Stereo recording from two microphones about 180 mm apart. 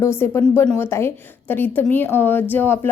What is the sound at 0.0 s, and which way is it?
A woman's voice, 15° left (ahead or behind).